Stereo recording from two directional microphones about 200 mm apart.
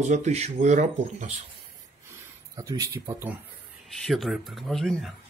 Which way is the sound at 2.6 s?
20° right (ahead or behind).